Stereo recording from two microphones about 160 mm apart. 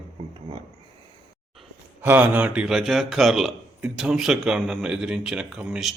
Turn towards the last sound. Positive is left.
turn(degrees=0)  # may be behind; listen again after turning